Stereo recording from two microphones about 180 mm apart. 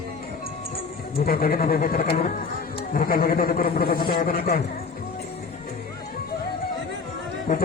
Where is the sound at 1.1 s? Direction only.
55° left (ahead or behind).